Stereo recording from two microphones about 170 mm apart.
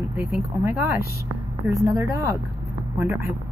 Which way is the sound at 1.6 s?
20° right (ahead or behind).